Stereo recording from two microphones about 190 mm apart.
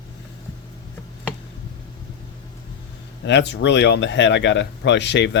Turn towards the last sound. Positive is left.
turn(degrees=65)  # may be behind; listen again after turning